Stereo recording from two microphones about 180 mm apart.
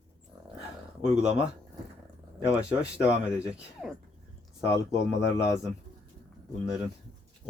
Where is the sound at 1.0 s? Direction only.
5° right (ahead or behind).